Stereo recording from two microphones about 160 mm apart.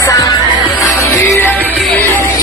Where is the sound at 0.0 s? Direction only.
20° left (ahead or behind).